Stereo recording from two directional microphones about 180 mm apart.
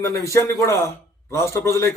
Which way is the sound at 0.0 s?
15° left (ahead or behind).